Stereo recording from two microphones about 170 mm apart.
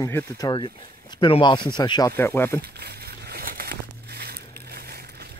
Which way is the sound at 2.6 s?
70° right (ahead or behind).